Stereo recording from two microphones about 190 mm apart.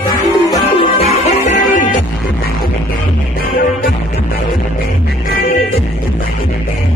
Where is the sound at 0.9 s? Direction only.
40° left (ahead or behind).